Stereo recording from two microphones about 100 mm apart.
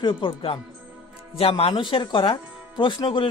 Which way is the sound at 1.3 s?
70° left (ahead or behind).